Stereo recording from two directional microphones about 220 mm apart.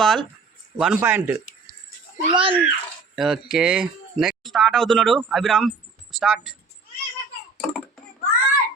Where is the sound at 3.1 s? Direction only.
Centre (ahead or behind).